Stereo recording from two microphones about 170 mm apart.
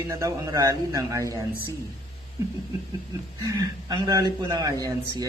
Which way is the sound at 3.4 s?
20° right (ahead or behind).